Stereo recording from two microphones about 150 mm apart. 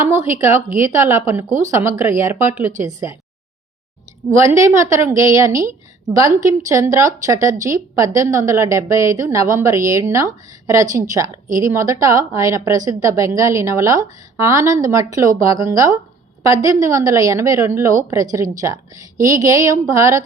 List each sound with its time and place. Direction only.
0.0 s a woman's voice: 15° right (ahead or behind)
4.3 s a woman's voice: 20° right (ahead or behind)